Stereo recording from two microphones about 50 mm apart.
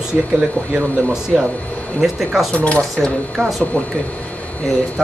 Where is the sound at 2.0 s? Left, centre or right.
Centre.